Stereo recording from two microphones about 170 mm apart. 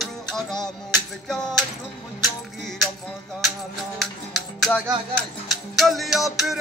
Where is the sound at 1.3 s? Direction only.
5° left (ahead or behind).